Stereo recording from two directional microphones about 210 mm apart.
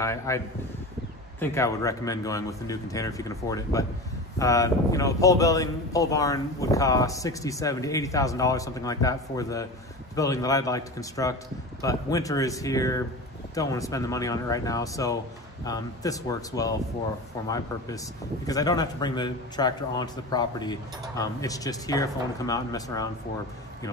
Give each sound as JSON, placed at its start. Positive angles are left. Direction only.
{"t": 0.0, "sound": "speech", "side_deg": 15}
{"t": 1.4, "sound": "speech", "side_deg": 15}